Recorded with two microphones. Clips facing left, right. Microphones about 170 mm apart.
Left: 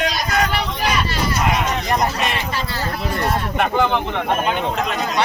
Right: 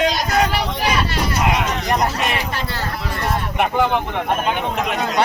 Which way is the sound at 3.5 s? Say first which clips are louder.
Right 1 dB; 10° right (ahead or behind).